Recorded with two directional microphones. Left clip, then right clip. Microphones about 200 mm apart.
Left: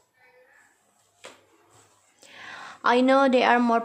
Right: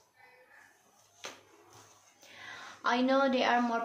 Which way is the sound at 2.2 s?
55° left (ahead or behind).